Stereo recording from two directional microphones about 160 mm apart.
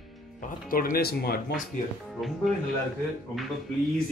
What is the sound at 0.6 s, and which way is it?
Speech, 60° left (ahead or behind).